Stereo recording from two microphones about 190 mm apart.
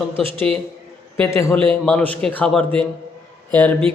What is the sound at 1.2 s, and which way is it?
A man's voice, 15° left (ahead or behind).